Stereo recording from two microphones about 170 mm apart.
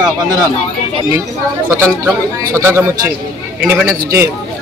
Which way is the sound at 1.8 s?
15° right (ahead or behind).